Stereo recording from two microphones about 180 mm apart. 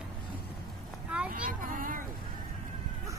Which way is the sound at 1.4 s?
50° right (ahead or behind).